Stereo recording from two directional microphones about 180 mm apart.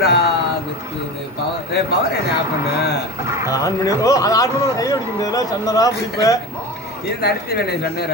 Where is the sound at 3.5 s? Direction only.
20° left (ahead or behind).